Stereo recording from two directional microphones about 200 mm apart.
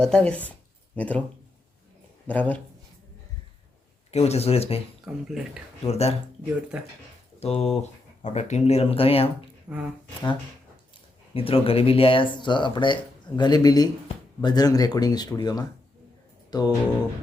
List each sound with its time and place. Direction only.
0.0 s speech: 5° left (ahead or behind)
2.2 s speech: 5° left (ahead or behind)
4.1 s speech: 30° left (ahead or behind)
5.1 s speech: centre (ahead or behind)
5.8 s speech: 30° left (ahead or behind)
6.7 s speech: 5° right (ahead or behind)
7.3 s speech: 30° left (ahead or behind)
9.7 s speech: 5° right (ahead or behind)
11.3 s speech: 30° left (ahead or behind)
16.5 s music: 20° left (ahead or behind)